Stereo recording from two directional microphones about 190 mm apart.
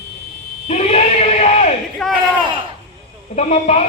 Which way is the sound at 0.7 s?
35° left (ahead or behind).